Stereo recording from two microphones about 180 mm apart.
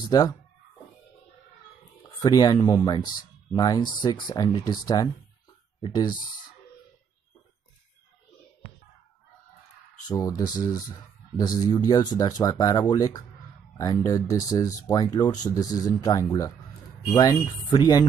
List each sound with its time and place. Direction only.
0.1 s speech: 20° left (ahead or behind)
2.0 s speech: 25° left (ahead or behind)
10.0 s speech: 20° left (ahead or behind)